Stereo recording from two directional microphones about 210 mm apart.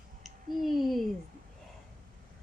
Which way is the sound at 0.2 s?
Centre (ahead or behind).